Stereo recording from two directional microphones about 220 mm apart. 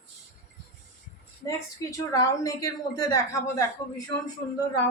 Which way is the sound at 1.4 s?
15° left (ahead or behind).